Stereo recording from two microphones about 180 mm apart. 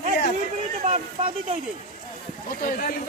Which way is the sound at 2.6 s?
55° left (ahead or behind).